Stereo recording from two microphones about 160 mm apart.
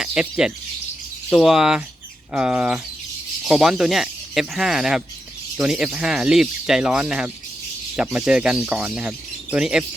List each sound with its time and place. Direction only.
0.0 s speech: 5° right (ahead or behind)